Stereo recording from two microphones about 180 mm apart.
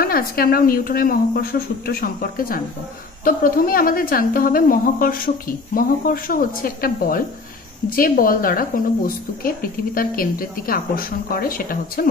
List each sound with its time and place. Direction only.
0.0 s a woman's voice: 55° left (ahead or behind)